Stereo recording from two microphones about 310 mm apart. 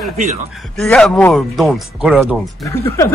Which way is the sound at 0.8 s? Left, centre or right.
Centre.